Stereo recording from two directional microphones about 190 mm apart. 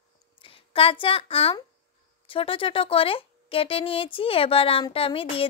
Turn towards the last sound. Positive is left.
turn(degrees=30)  # may be behind; listen again after turning